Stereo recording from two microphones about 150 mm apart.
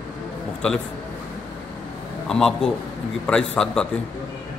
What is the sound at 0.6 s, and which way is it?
Speech, 10° left (ahead or behind).